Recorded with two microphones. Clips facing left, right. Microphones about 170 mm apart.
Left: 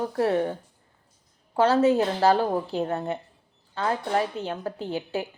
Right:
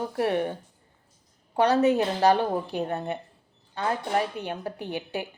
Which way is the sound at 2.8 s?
40° left (ahead or behind).